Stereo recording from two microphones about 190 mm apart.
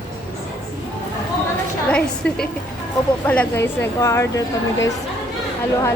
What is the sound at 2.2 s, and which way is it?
A woman's voice, 5° left (ahead or behind).